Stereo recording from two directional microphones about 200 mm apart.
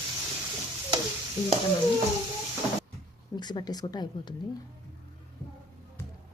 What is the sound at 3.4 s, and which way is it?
Speech, 20° left (ahead or behind).